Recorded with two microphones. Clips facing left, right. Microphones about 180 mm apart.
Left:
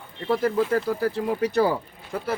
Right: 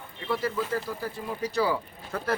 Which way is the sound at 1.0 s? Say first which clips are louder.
Left 9 dB; 75° left (ahead or behind).